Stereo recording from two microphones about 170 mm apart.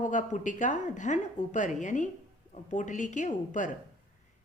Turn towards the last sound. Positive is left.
turn(degrees=45)  # may be behind; listen again after turning